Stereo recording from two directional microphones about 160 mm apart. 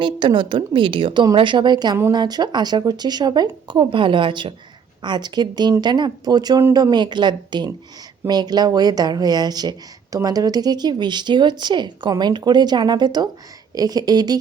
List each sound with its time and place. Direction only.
0.0 s speech: 30° right (ahead or behind)